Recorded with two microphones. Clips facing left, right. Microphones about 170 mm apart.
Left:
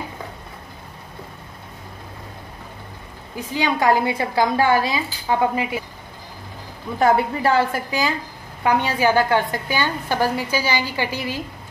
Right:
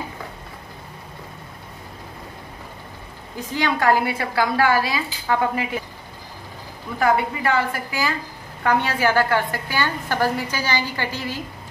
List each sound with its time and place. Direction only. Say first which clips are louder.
3.3 s a woman's voice: left 1 dB; 10° left (ahead or behind)
7.0 s a woman's voice: left 2 dB; 25° left (ahead or behind)